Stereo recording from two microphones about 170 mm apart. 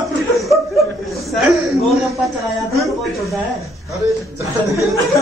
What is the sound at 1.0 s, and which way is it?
A man's voice, centre (ahead or behind).